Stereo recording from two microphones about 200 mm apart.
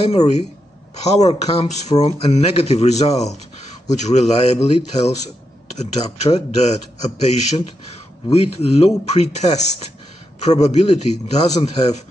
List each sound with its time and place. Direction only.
0.0 s speech: 35° left (ahead or behind)